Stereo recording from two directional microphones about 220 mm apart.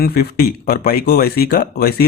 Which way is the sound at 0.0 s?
45° left (ahead or behind).